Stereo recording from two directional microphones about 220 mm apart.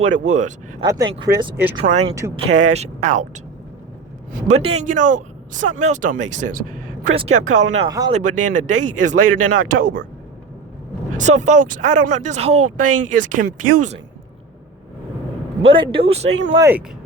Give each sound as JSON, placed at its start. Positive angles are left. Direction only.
{"t": 0.0, "sound": "speech", "side_deg": -35}
{"t": 0.8, "sound": "speech", "side_deg": -15}
{"t": 4.3, "sound": "speech", "side_deg": -35}
{"t": 7.9, "sound": "speech", "side_deg": -15}
{"t": 8.1, "sound": "speech", "side_deg": -35}
{"t": 11.2, "sound": "speech", "side_deg": -35}
{"t": 15.6, "sound": "speech", "side_deg": -25}
{"t": 16.6, "sound": "speech", "side_deg": -10}